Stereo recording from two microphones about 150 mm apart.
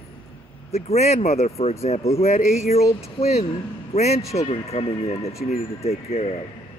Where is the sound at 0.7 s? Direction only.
45° left (ahead or behind).